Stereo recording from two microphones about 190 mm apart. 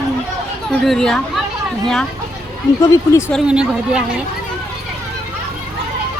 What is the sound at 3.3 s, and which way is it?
Speech, 5° right (ahead or behind).